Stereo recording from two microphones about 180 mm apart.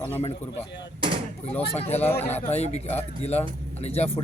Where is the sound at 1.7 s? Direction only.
35° left (ahead or behind).